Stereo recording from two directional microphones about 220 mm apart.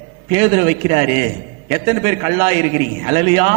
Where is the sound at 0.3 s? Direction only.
15° right (ahead or behind).